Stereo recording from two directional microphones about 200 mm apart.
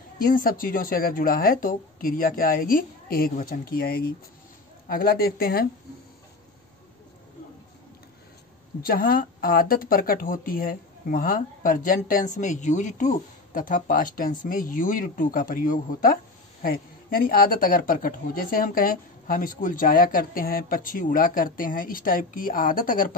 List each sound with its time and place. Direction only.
0.3 s speech: 45° left (ahead or behind)
8.8 s speech: 45° left (ahead or behind)